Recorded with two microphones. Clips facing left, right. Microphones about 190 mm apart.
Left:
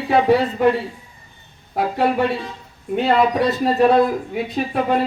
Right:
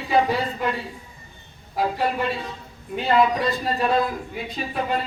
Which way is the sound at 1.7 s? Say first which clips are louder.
Left 5 dB; 65° left (ahead or behind).